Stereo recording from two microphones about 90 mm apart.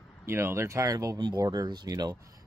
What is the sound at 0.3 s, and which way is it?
Speech, 30° right (ahead or behind).